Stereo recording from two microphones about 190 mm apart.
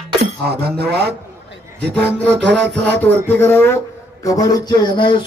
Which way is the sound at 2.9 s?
10° left (ahead or behind).